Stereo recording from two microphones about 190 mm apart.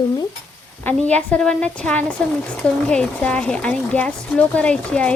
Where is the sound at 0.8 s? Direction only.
5° left (ahead or behind).